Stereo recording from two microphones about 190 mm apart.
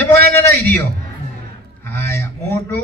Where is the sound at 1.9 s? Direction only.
10° left (ahead or behind).